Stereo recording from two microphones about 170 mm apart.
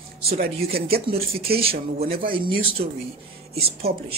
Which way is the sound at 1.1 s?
35° right (ahead or behind).